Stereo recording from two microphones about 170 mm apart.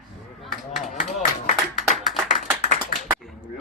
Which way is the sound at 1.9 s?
Centre (ahead or behind).